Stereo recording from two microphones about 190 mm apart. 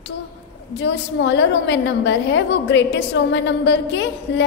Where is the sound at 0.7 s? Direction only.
70° left (ahead or behind).